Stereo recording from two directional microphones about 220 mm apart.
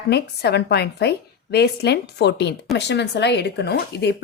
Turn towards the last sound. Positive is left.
turn(degrees=50)  # may be behind; listen again after turning